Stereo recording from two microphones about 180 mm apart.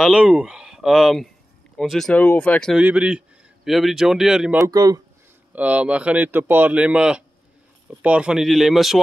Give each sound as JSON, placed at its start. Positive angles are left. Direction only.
{"t": 0.0, "sound": "a man's voice", "side_deg": -5}
{"t": 2.8, "sound": "a man's voice", "side_deg": -5}
{"t": 4.6, "sound": "speech", "side_deg": -20}
{"t": 5.5, "sound": "a man's voice", "side_deg": -10}